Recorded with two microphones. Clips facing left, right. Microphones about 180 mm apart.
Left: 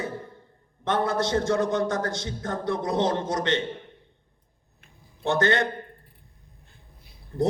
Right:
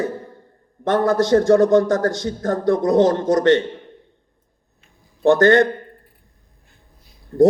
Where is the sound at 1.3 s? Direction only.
55° right (ahead or behind).